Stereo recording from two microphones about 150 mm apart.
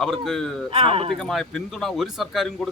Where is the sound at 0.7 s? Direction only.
40° right (ahead or behind).